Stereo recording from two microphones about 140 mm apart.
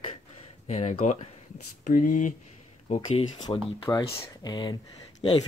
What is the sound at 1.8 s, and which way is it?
Speech, 70° left (ahead or behind).